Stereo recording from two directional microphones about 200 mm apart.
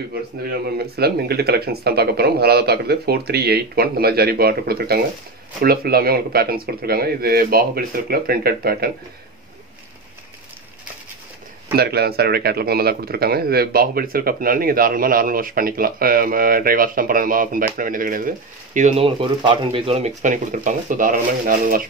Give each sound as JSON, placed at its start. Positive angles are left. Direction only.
{"t": 0.7, "sound": "speech", "side_deg": -55}
{"t": 11.7, "sound": "speech", "side_deg": -50}